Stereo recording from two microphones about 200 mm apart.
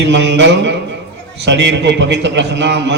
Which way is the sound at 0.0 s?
60° right (ahead or behind).